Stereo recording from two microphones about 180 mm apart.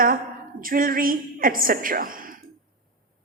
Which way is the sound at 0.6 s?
50° right (ahead or behind).